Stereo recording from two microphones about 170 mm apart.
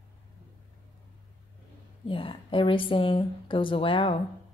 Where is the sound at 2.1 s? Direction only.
30° left (ahead or behind).